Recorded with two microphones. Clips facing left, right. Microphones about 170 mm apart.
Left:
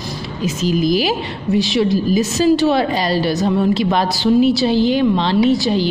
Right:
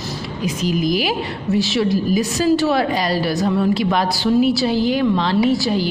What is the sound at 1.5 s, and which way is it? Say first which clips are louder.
A woman's voice: left 2 dB; 20° left (ahead or behind).